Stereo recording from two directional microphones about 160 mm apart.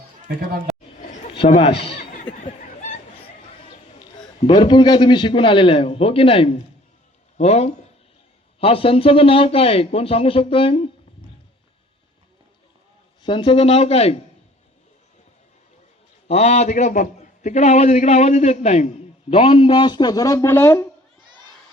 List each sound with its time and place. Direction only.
1.4 s speech: 35° left (ahead or behind)
2.1 s a sound: 55° left (ahead or behind)
4.4 s a man's voice: 30° left (ahead or behind)
13.2 s speech: 30° left (ahead or behind)
16.3 s a man's voice: 40° left (ahead or behind); by 20.8 s 15° left (ahead or behind)